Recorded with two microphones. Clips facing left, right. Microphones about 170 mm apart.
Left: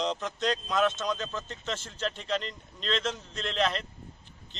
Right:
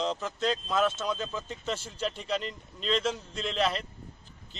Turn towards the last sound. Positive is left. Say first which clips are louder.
# even
turn(degrees=-5)  # may be behind; listen again after turning